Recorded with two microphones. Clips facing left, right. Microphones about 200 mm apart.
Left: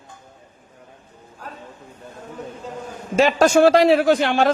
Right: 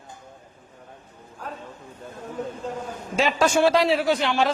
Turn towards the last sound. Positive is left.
turn(degrees=50)  # may be behind; listen again after turning